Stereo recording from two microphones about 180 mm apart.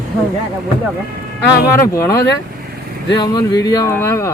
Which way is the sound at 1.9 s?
20° left (ahead or behind).